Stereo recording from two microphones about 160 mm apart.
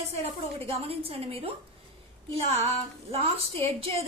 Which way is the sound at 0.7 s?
35° right (ahead or behind).